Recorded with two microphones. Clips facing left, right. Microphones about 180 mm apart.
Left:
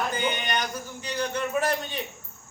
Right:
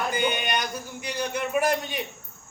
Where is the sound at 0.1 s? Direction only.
10° right (ahead or behind).